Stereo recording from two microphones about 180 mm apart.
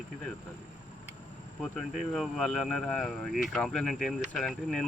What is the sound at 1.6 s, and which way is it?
Speech, centre (ahead or behind).